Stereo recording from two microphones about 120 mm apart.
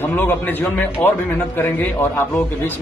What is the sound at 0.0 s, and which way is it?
Speech, 15° left (ahead or behind).